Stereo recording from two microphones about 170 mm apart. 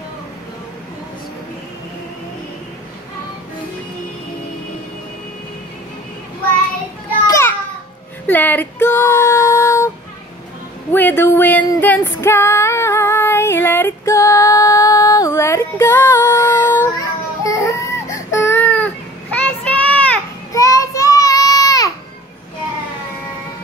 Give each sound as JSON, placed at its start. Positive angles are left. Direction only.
{"t": 7.2, "sound": "children playing", "side_deg": 15}
{"t": 8.3, "sound": "female singing", "side_deg": 10}
{"t": 10.9, "sound": "music", "side_deg": 10}
{"t": 17.4, "sound": "baby cry", "side_deg": 20}
{"t": 19.3, "sound": "child singing", "side_deg": 10}
{"t": 20.5, "sound": "child singing", "side_deg": 20}